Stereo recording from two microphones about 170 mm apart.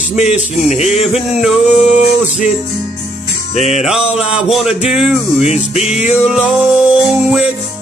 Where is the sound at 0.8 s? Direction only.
Centre (ahead or behind).